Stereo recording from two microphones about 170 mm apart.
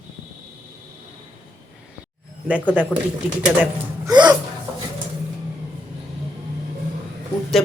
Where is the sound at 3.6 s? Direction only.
20° right (ahead or behind).